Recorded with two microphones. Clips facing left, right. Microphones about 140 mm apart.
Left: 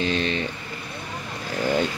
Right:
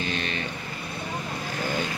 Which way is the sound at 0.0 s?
25° left (ahead or behind).